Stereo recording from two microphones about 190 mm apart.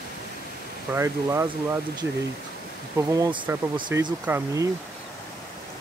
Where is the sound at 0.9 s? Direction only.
15° right (ahead or behind).